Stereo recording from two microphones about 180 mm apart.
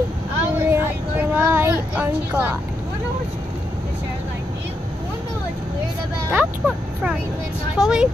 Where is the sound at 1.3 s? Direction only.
10° right (ahead or behind).